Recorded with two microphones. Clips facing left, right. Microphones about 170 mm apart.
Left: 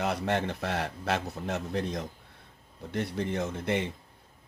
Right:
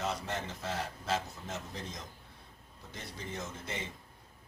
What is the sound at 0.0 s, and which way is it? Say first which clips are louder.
Speech: left 8 dB; 65° left (ahead or behind).